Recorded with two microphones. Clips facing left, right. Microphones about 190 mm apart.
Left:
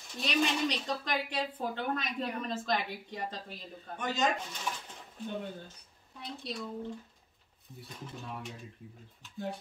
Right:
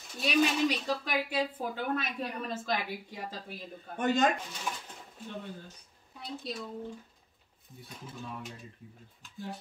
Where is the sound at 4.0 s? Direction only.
50° right (ahead or behind).